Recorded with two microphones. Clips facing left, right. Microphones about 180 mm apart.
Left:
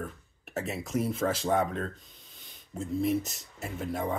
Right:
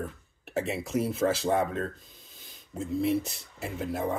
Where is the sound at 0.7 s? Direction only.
5° right (ahead or behind).